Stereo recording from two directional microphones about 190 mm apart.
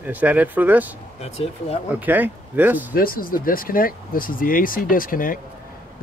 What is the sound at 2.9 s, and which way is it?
Speech, 50° left (ahead or behind).